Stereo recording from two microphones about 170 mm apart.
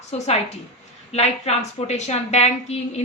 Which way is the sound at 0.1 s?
40° left (ahead or behind).